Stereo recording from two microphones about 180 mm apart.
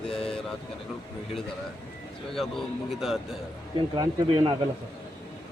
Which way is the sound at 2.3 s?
Centre (ahead or behind).